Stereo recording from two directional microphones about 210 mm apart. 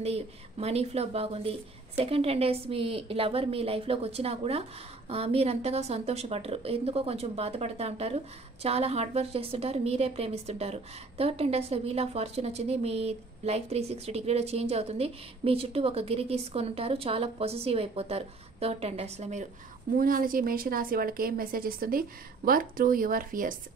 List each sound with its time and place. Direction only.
0.0 s a woman's voice: 30° right (ahead or behind)
20.0 s a woman's voice: 40° right (ahead or behind)